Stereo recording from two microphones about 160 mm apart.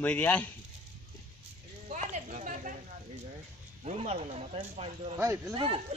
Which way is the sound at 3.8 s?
45° right (ahead or behind).